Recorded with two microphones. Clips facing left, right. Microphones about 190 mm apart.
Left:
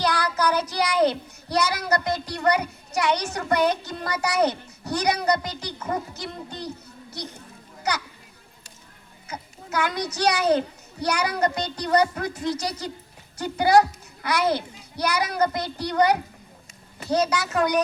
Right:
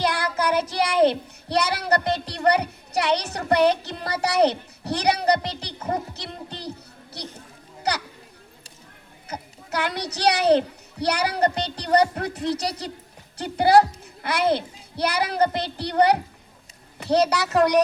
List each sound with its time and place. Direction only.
0.0 s child singing: 25° right (ahead or behind)
3.3 s a child's voice: 35° right (ahead or behind)
9.2 s a child's voice: 35° right (ahead or behind)
12.3 s speech: 65° right (ahead or behind)
13.4 s a child's voice: 35° right (ahead or behind)